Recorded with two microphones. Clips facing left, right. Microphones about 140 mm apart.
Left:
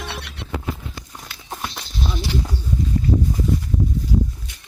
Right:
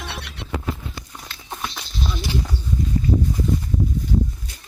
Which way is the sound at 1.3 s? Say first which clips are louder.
Left 1 dB; 5° left (ahead or behind).